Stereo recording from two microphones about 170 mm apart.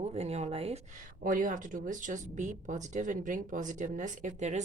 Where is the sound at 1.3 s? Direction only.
50° right (ahead or behind).